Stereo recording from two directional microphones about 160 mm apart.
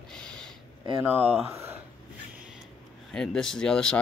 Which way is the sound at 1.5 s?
15° right (ahead or behind).